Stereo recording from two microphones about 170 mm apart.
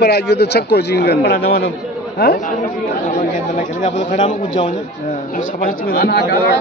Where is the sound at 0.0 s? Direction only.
75° left (ahead or behind).